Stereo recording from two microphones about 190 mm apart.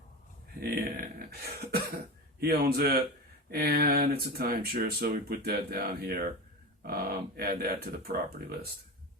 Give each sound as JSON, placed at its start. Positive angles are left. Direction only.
{"t": 0.6, "sound": "throat clearing", "side_deg": -55}
{"t": 2.4, "sound": "speech", "side_deg": -55}